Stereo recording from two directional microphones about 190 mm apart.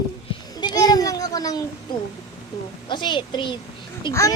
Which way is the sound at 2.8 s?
25° left (ahead or behind).